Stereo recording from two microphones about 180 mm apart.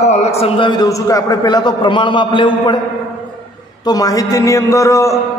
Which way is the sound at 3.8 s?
20° left (ahead or behind).